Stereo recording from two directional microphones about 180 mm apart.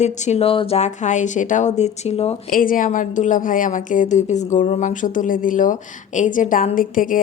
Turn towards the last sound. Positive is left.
turn(degrees=50)  # may be behind; listen again after turning